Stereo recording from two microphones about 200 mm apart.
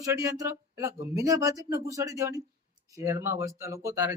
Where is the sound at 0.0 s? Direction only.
15° right (ahead or behind).